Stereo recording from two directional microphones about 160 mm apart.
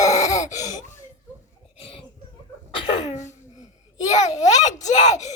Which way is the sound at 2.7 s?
45° left (ahead or behind).